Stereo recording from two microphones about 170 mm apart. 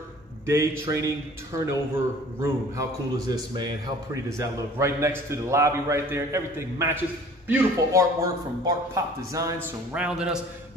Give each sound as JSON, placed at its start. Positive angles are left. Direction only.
{"t": 0.5, "sound": "a man's voice", "side_deg": -15}
{"t": 9.9, "sound": "a man's voice", "side_deg": -5}